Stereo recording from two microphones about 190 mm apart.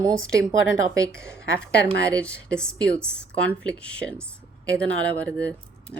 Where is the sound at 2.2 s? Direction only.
5° left (ahead or behind).